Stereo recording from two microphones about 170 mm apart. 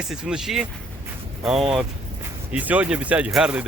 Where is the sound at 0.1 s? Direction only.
5° right (ahead or behind).